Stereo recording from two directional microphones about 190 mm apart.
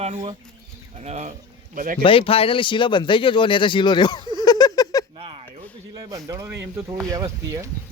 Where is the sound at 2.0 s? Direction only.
30° left (ahead or behind).